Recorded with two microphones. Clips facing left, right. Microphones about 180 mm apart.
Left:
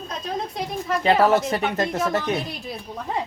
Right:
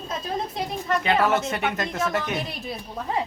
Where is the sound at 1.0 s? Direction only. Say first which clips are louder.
Left 5 dB; 35° left (ahead or behind).